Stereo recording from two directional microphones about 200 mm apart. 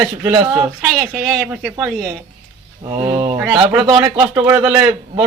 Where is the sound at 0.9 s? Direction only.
Centre (ahead or behind).